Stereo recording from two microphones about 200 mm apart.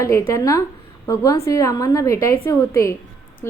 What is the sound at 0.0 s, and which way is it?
A woman's voice, 15° left (ahead or behind).